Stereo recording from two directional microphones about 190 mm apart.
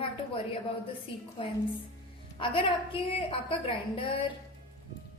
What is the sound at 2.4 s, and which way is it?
A woman's voice, 25° left (ahead or behind).